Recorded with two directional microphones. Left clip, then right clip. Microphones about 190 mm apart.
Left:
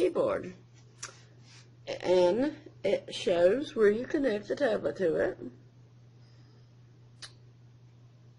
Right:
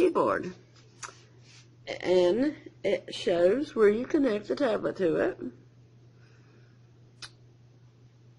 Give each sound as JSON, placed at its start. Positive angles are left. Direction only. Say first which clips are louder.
{"t": 0.0, "sound": "speech", "louder": "right 3 dB", "side_deg": -25}
{"t": 1.9, "sound": "a woman's voice", "louder": "right 1 dB", "side_deg": -15}
{"t": 3.7, "sound": "a woman's voice", "louder": "right 2 dB", "side_deg": -20}